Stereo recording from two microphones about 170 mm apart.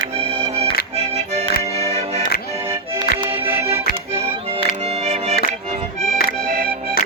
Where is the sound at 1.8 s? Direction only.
40° right (ahead or behind).